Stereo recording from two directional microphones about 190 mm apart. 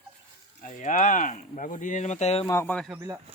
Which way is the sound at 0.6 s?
40° left (ahead or behind).